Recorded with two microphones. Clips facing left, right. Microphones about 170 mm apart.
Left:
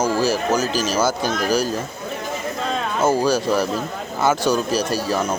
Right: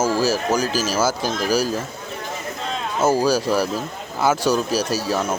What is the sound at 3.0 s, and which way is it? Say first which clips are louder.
Speech: right 1 dB; 5° right (ahead or behind).